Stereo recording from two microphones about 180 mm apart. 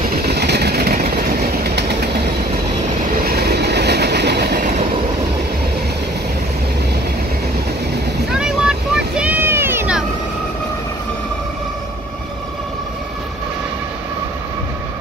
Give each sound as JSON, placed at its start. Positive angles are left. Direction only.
{"t": 0.1, "sound": "vehicle", "side_deg": -65}
{"t": 3.3, "sound": "train", "side_deg": -65}
{"t": 8.4, "sound": "vehicle", "side_deg": -5}